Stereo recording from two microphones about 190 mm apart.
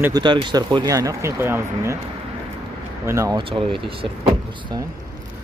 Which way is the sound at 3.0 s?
15° right (ahead or behind).